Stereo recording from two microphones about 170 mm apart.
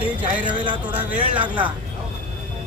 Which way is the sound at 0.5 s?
30° right (ahead or behind).